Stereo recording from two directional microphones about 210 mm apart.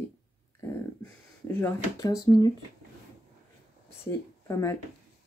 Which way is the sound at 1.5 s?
15° left (ahead or behind).